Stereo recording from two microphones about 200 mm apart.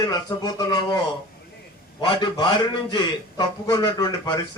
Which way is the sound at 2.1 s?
25° left (ahead or behind).